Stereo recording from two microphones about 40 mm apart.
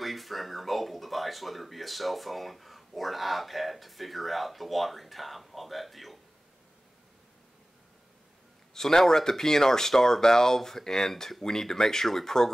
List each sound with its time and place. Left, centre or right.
0.0 s speech: centre
8.7 s speech: centre